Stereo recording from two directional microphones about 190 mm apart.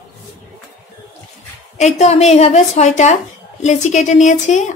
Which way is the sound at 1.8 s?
35° left (ahead or behind).